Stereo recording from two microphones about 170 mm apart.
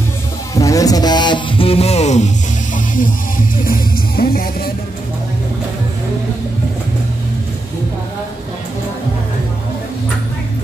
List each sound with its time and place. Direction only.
0.6 s speech: 20° left (ahead or behind); by 3.1 s 45° left (ahead or behind)
3.6 s music: 60° left (ahead or behind)